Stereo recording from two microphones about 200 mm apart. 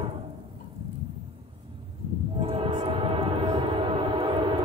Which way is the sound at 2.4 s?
25° right (ahead or behind).